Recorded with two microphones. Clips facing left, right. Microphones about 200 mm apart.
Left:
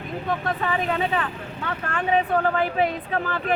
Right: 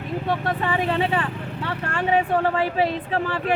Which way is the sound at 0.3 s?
30° right (ahead or behind).